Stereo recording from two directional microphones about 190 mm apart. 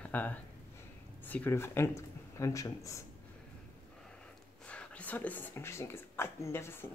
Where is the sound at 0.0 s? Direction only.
10° left (ahead or behind).